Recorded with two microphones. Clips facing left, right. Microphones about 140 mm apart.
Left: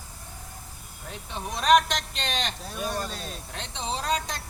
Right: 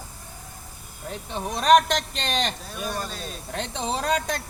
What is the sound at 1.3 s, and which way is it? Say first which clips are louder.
Speech: right 3 dB; 35° right (ahead or behind).